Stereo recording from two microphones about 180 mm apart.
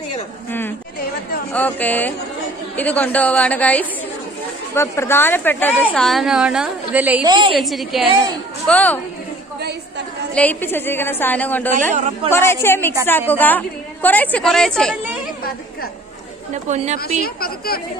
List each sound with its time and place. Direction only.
1.5 s a woman's voice: 10° left (ahead or behind); by 7.3 s 10° right (ahead or behind)
7.3 s a woman's voice: 25° right (ahead or behind)
7.5 s a woman's voice: centre (ahead or behind)
10.3 s a woman's voice: 10° left (ahead or behind)
11.9 s speech: 40° right (ahead or behind)
12.3 s a woman's voice: 15° left (ahead or behind)
16.6 s speech: 40° right (ahead or behind)
17.2 s a woman's voice: 55° left (ahead or behind)